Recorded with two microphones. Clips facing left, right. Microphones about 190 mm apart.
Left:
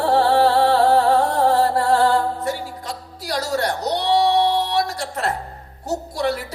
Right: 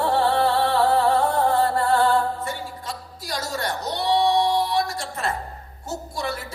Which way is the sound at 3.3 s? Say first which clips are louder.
Left 6 dB; 75° left (ahead or behind).